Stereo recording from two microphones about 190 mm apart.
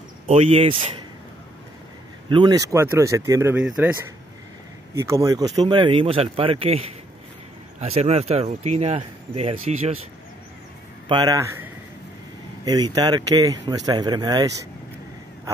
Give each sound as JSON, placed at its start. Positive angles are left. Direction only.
{"t": 0.3, "sound": "speech", "side_deg": -30}
{"t": 2.2, "sound": "speech", "side_deg": -25}
{"t": 4.9, "sound": "speech", "side_deg": -15}
{"t": 7.8, "sound": "speech", "side_deg": -35}
{"t": 11.1, "sound": "speech", "side_deg": -20}